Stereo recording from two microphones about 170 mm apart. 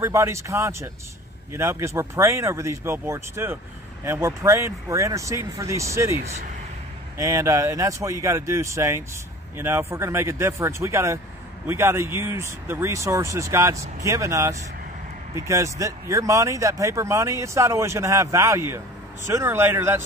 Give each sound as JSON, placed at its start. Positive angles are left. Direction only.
{"t": 0.0, "sound": "speech", "side_deg": -15}